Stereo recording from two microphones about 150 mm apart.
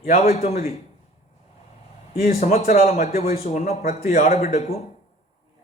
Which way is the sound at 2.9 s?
65° left (ahead or behind).